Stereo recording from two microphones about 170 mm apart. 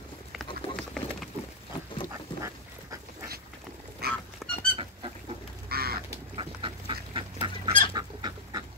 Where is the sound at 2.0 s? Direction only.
20° right (ahead or behind).